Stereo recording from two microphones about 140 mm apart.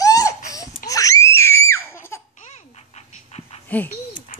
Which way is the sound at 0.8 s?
25° left (ahead or behind).